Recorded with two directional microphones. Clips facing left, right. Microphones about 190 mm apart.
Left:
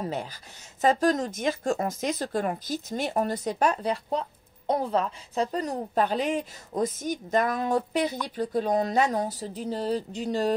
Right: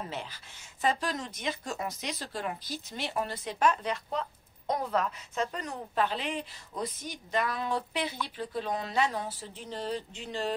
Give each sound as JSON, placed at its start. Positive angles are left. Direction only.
{"t": 0.0, "sound": "speech", "side_deg": 40}